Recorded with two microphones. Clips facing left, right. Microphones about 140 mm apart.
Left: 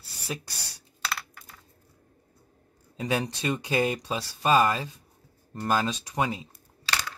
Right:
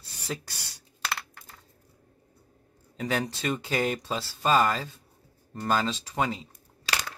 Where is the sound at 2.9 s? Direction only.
20° left (ahead or behind).